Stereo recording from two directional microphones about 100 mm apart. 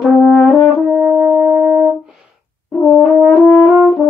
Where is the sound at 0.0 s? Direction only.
5° left (ahead or behind).